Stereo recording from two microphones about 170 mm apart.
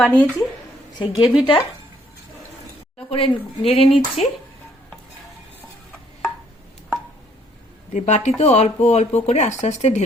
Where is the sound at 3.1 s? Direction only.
35° left (ahead or behind).